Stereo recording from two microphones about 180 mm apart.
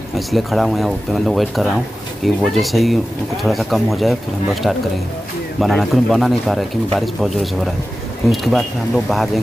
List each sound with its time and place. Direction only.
0.3 s speech: centre (ahead or behind)